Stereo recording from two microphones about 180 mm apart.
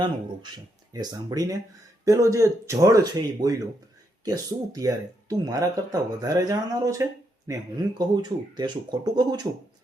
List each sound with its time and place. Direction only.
0.9 s speech: 20° right (ahead or behind)